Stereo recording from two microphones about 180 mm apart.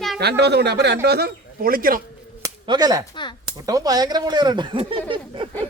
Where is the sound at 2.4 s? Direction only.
20° right (ahead or behind).